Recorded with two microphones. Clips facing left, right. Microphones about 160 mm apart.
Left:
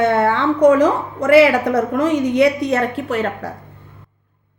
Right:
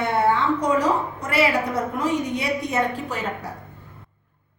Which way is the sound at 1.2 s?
85° left.